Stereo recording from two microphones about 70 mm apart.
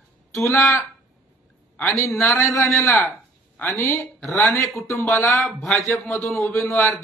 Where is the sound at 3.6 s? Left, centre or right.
Left.